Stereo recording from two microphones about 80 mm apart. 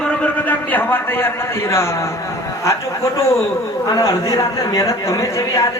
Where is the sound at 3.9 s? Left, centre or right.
Left.